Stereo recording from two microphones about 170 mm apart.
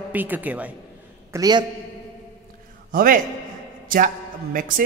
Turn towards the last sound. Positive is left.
turn(degrees=-55)  # may be behind; listen again after turning